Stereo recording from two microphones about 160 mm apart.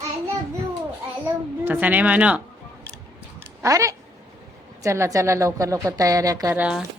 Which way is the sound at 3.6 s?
20° right (ahead or behind).